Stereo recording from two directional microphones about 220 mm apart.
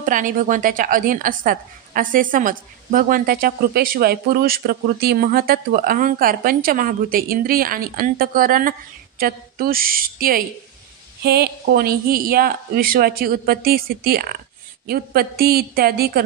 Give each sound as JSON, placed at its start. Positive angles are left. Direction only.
{"t": 0.0, "sound": "a woman's voice", "side_deg": -35}